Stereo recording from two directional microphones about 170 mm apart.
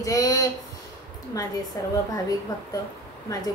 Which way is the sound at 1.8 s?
20° left (ahead or behind).